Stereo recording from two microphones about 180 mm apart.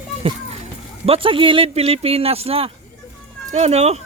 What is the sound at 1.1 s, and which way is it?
Speech, 30° right (ahead or behind).